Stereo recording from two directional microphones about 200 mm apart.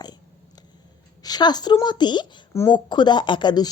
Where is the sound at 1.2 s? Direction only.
20° left (ahead or behind).